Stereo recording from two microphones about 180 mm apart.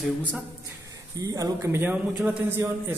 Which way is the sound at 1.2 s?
20° right (ahead or behind).